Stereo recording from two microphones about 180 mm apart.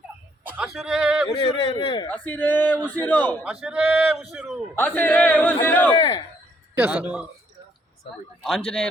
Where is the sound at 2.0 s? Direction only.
10° left (ahead or behind).